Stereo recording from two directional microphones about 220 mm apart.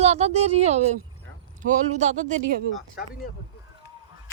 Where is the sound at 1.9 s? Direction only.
30° right (ahead or behind).